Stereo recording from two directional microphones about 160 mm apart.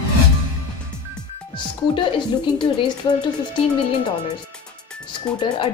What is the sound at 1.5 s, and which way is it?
Speech, 30° left (ahead or behind).